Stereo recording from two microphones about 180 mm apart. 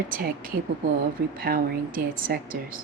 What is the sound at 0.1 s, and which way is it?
A woman's voice, 50° right (ahead or behind).